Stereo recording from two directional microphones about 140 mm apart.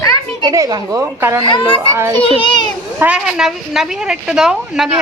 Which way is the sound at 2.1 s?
40° left (ahead or behind).